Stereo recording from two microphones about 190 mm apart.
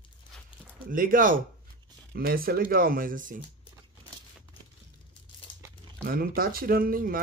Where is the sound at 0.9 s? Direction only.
45° right (ahead or behind).